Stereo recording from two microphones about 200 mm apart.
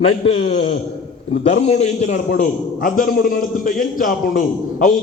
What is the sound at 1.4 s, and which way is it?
A man's voice, 30° left (ahead or behind).